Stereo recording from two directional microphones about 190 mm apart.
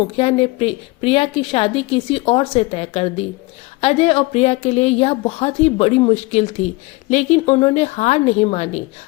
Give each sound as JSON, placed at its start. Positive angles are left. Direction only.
{"t": 0.2, "sound": "a woman's voice", "side_deg": 30}